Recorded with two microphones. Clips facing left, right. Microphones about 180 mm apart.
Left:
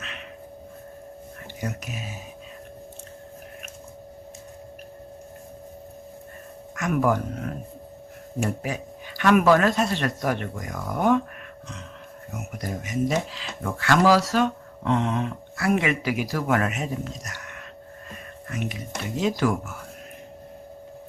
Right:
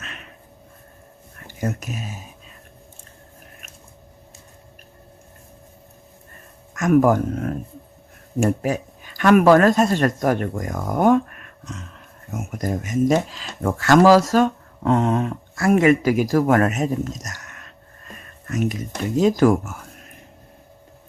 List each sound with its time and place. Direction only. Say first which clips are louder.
0.0 s a sound: left 1 dB; 45° right (ahead or behind)
1.6 s speech: right 6 dB; 45° right (ahead or behind)
6.7 s speech: right 7 dB; 45° right (ahead or behind)
12.3 s speech: right 7 dB; 45° right (ahead or behind)